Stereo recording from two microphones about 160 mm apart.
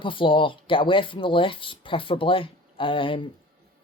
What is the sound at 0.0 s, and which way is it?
Speech, 30° left (ahead or behind).